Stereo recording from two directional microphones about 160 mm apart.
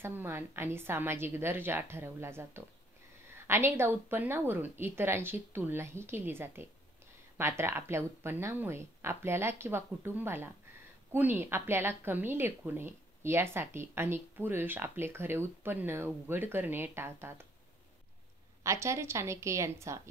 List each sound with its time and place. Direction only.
0.0 s a woman's voice: 15° right (ahead or behind)
18.6 s a woman's voice: 20° right (ahead or behind)